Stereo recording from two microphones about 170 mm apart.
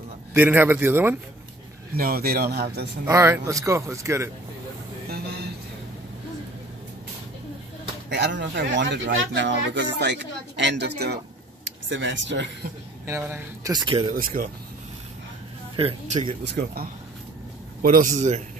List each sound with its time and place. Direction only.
0.3 s speech: 10° right (ahead or behind)
2.0 s speech: 60° right (ahead or behind)
3.1 s speech: 15° right (ahead or behind)
5.1 s music: 70° right (ahead or behind)
8.1 s speech: 90° right; by 11.1 s 75° right (ahead or behind)
11.9 s speech: 90° right
13.0 s speech: 15° right (ahead or behind)
14.1 s speech: 55° right (ahead or behind)
15.7 s speech: 30° right (ahead or behind)
16.4 s speech: 70° right (ahead or behind)
17.8 s a man's voice: 55° right (ahead or behind)